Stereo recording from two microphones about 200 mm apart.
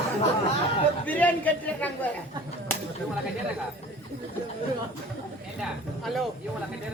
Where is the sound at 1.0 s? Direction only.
10° left (ahead or behind).